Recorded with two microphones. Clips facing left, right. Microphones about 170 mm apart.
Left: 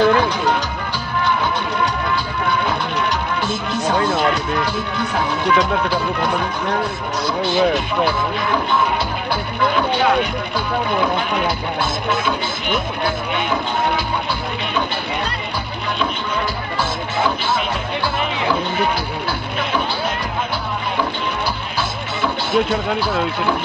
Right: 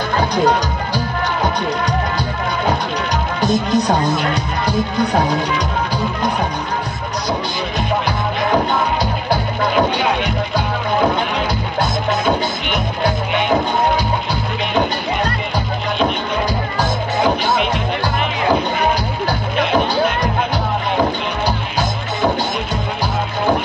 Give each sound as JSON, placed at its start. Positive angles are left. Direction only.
{"t": 0.2, "sound": "music", "side_deg": -40}
{"t": 3.3, "sound": "speech", "side_deg": -40}
{"t": 7.5, "sound": "music", "side_deg": -40}
{"t": 11.8, "sound": "music", "side_deg": -40}